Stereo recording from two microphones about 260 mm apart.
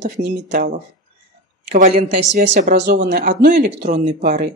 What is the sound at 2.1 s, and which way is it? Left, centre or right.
Speech, right.